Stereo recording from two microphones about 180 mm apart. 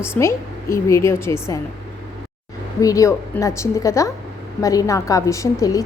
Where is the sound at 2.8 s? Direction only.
20° left (ahead or behind).